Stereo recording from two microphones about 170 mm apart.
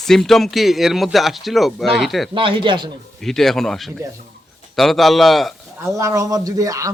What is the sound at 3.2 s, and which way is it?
A man's voice, centre (ahead or behind).